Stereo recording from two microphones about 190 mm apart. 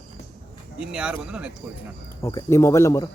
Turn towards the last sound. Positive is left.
turn(degrees=15)  # may be behind; listen again after turning